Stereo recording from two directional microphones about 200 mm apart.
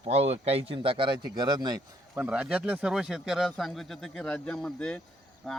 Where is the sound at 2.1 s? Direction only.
5° right (ahead or behind).